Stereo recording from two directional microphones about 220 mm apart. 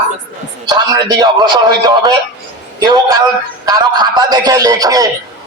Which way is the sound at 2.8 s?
15° right (ahead or behind).